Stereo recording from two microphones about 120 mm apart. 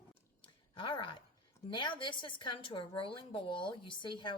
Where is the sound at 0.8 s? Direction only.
45° left (ahead or behind).